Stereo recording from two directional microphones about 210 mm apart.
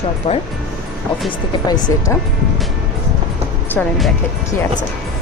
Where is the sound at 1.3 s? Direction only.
20° left (ahead or behind).